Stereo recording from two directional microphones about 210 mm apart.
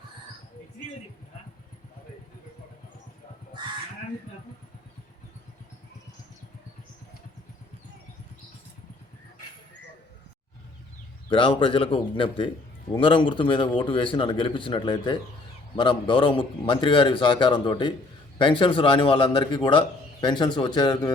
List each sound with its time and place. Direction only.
11.3 s a man's voice: 25° left (ahead or behind)